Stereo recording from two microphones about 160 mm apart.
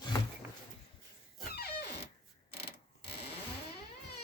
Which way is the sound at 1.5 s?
85° left.